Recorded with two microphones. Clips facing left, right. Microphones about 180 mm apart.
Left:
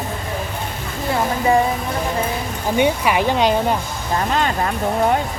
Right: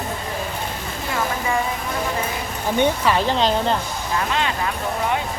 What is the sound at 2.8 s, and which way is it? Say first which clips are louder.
Speech: left 2 dB; 15° left (ahead or behind).